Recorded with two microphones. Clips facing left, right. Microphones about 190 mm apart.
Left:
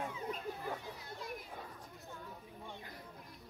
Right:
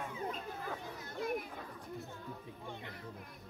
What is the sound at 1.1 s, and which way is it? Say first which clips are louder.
Speech: right 11 dB; 60° right (ahead or behind).